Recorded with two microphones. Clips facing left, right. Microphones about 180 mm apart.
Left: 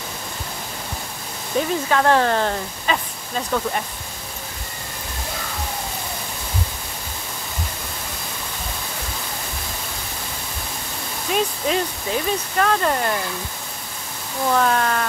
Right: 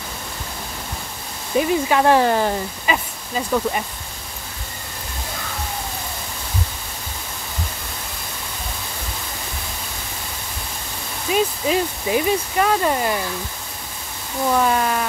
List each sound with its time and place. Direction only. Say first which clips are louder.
1.5 s speech: right 3 dB; 10° right (ahead or behind)
11.3 s speech: right 2 dB; 5° right (ahead or behind)
14.5 s speech: even; 10° right (ahead or behind)